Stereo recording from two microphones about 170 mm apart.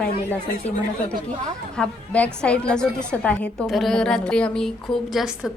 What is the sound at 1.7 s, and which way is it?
A woman's voice, 5° left (ahead or behind).